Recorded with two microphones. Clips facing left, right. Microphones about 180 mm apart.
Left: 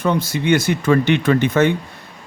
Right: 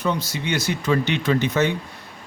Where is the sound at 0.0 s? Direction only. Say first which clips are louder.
Left 6 dB; 50° left (ahead or behind).